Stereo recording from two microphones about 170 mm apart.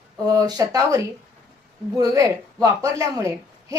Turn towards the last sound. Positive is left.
turn(degrees=-20)  # may be behind; listen again after turning